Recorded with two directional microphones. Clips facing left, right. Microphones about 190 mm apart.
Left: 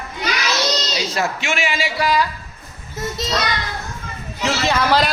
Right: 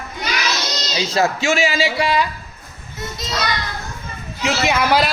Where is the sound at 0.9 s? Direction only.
25° right (ahead or behind).